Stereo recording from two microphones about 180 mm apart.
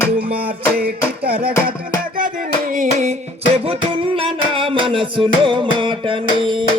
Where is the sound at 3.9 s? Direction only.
30° right (ahead or behind).